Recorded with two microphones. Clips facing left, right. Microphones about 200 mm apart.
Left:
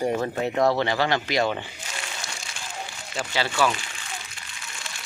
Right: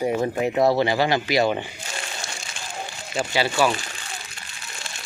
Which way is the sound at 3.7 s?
35° right (ahead or behind).